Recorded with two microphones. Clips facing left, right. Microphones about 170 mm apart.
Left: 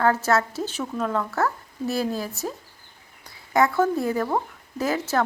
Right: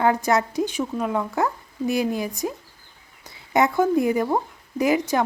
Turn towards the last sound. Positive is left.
turn(degrees=-15)  # may be behind; listen again after turning